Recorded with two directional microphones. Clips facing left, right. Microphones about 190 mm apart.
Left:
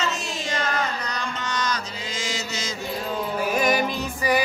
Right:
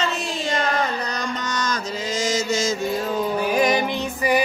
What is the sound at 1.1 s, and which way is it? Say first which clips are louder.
Mantra: right 3 dB; 45° right (ahead or behind).